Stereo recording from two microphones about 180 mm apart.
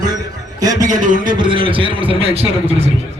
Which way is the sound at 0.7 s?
45° right (ahead or behind).